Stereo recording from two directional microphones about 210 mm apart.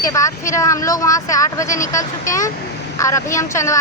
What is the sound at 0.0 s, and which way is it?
Speech, 15° left (ahead or behind).